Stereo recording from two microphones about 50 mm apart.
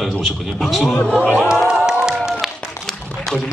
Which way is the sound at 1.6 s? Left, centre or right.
Centre.